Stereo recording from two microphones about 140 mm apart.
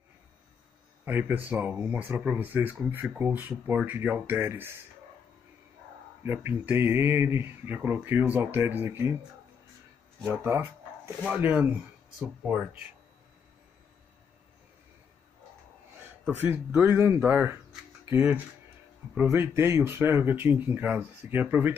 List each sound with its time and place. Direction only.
1.0 s speech: 15° right (ahead or behind)
6.2 s speech: 15° right (ahead or behind)
10.3 s speech: 15° right (ahead or behind)
16.3 s speech: 15° right (ahead or behind)